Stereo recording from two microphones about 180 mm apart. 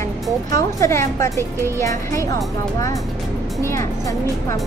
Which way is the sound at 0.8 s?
15° left (ahead or behind).